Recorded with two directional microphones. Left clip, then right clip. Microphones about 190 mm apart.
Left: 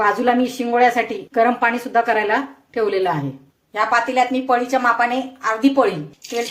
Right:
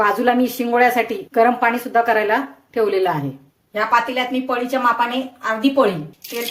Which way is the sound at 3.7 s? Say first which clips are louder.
Even; 35° left (ahead or behind).